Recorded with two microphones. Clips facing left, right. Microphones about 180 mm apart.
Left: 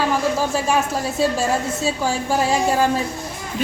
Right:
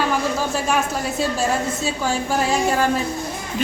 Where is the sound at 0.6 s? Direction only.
25° left (ahead or behind).